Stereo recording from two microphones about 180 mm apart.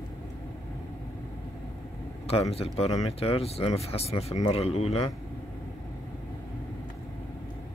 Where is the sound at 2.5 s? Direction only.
35° left (ahead or behind).